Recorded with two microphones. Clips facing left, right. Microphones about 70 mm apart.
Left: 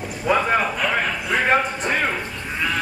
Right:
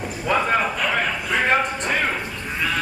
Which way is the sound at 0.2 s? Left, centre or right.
Centre.